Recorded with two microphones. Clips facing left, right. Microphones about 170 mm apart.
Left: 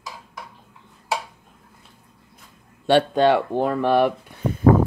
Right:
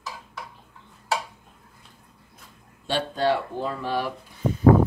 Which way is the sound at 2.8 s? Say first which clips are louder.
Left 7 dB; 65° left (ahead or behind).